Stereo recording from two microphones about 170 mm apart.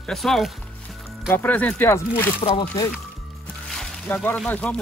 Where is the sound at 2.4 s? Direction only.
30° left (ahead or behind).